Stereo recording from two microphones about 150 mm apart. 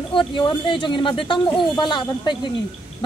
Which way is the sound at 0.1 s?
35° left (ahead or behind).